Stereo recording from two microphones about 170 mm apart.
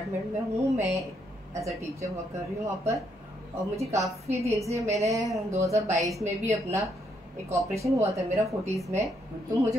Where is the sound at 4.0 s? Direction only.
20° right (ahead or behind).